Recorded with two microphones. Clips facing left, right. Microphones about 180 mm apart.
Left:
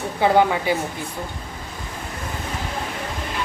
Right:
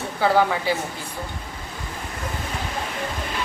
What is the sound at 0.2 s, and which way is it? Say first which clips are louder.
Speech: left 2 dB; 20° left (ahead or behind).